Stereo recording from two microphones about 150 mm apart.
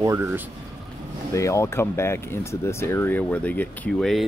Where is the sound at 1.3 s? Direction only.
20° left (ahead or behind); by 4.3 s centre (ahead or behind).